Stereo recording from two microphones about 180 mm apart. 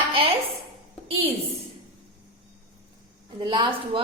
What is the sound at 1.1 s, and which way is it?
Speech, 35° right (ahead or behind).